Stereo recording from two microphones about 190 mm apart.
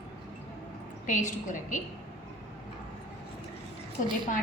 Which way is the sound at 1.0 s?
40° left (ahead or behind).